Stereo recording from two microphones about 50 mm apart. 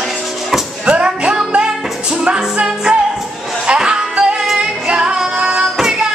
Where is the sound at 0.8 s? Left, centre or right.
Right.